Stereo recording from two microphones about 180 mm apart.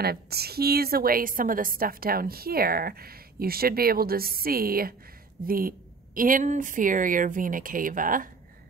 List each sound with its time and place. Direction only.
0.0 s a woman's voice: 60° right (ahead or behind)